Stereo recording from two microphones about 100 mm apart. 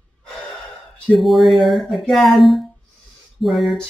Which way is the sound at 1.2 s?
Centre (ahead or behind).